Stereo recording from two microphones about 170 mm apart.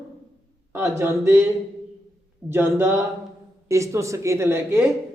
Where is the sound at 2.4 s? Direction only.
15° right (ahead or behind).